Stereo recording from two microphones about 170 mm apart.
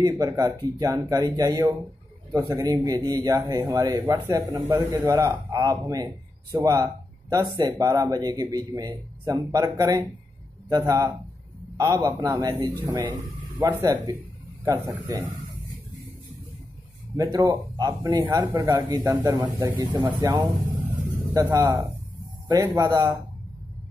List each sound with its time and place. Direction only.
0.0 s a man's voice: 20° right (ahead or behind)
11.7 s a man's voice: 20° right (ahead or behind)
17.2 s a man's voice: 20° right (ahead or behind)
20.8 s a sound: 20° right (ahead or behind)
22.8 s a man's voice: 20° right (ahead or behind)